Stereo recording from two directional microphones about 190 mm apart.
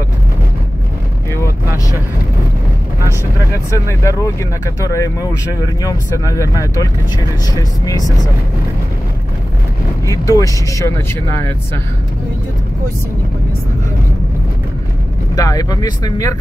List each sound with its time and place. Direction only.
1.3 s vehicle: 15° left (ahead or behind)
3.7 s speech: 15° left (ahead or behind)
10.0 s speech: 15° left (ahead or behind)
15.3 s speech: 20° left (ahead or behind)